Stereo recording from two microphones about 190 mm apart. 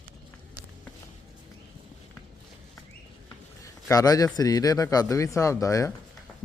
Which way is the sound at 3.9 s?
20° left (ahead or behind).